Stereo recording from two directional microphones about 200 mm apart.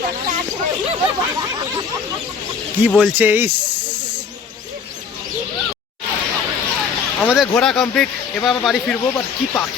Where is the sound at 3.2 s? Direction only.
10° right (ahead or behind).